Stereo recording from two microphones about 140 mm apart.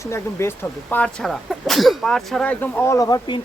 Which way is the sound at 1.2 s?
Centre (ahead or behind).